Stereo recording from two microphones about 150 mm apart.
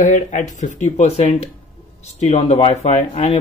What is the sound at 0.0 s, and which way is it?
Speech, 55° left (ahead or behind).